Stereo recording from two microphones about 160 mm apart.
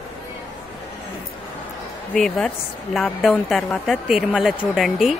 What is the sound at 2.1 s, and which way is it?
A woman's voice, centre (ahead or behind).